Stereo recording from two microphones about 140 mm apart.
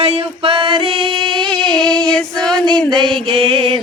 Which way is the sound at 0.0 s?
45° right (ahead or behind).